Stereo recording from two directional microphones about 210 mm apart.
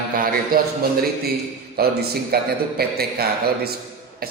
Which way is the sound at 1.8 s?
45° right (ahead or behind).